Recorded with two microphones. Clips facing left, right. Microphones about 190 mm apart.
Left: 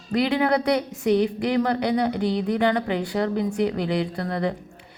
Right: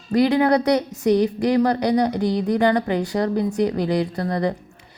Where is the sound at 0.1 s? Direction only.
35° right (ahead or behind).